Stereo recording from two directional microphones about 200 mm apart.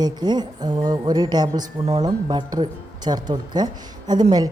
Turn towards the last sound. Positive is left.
turn(degrees=-20)  # may be behind; listen again after turning